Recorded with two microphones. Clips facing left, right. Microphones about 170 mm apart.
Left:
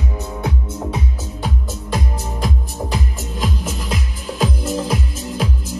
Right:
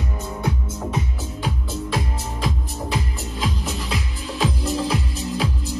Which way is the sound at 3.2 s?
45° left (ahead or behind).